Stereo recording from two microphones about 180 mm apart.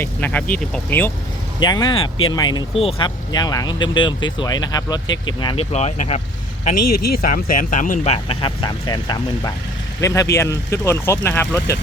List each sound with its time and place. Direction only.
0.0 s speech: 10° left (ahead or behind)
1.5 s speech: 25° left (ahead or behind)
5.7 s speech: 40° left (ahead or behind)
7.1 s speech: 55° left (ahead or behind); by 11.8 s 15° left (ahead or behind)